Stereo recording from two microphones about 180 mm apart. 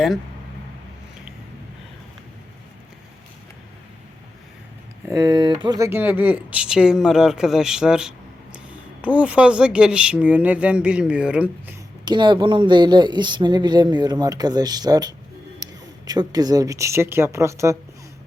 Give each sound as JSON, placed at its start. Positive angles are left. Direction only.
{"t": 5.0, "sound": "speech", "side_deg": -15}
{"t": 12.0, "sound": "speech", "side_deg": -25}